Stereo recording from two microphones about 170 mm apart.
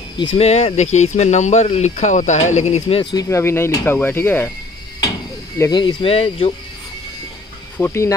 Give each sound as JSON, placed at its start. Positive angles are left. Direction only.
{"t": 0.2, "sound": "speech", "side_deg": 35}
{"t": 3.0, "sound": "speech", "side_deg": 25}
{"t": 5.6, "sound": "speech", "side_deg": 25}
{"t": 7.7, "sound": "speech", "side_deg": 15}